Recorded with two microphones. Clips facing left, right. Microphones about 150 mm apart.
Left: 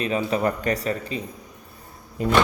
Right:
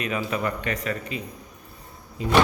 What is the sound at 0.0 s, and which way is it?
Speech, 30° left (ahead or behind).